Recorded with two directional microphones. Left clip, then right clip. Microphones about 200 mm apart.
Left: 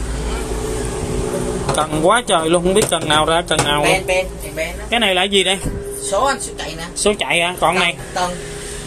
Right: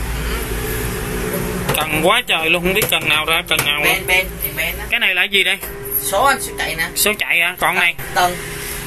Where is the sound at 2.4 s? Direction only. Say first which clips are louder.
Left 1 dB; 20° left (ahead or behind).